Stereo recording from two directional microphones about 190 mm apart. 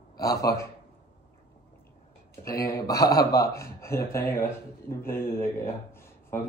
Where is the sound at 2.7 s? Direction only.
15° left (ahead or behind).